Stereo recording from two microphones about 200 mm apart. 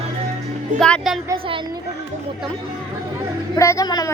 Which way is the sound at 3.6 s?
15° left (ahead or behind).